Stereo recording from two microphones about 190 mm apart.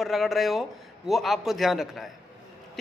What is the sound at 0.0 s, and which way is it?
A man's voice, centre (ahead or behind).